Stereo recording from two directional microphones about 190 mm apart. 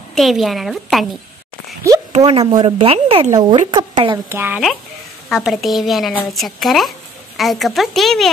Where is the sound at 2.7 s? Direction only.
30° right (ahead or behind).